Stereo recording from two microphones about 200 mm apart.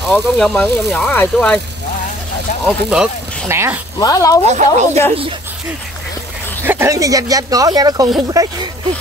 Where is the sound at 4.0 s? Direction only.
15° left (ahead or behind).